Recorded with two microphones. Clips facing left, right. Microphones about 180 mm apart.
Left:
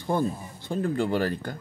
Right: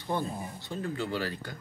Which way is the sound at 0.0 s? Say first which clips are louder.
Left 6 dB; 45° left (ahead or behind).